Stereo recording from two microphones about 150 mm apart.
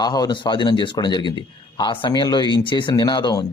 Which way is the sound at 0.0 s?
25° left (ahead or behind).